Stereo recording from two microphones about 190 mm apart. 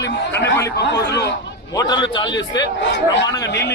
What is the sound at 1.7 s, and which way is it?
Speech, 20° left (ahead or behind).